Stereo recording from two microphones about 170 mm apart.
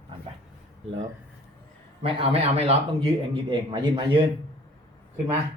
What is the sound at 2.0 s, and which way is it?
A man's voice, 35° right (ahead or behind).